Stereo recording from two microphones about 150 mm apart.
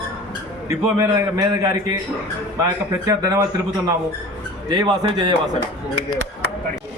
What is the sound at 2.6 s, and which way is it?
Speech, 20° right (ahead or behind).